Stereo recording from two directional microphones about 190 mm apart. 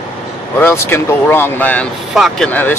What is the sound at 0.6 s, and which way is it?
Speech, 15° left (ahead or behind).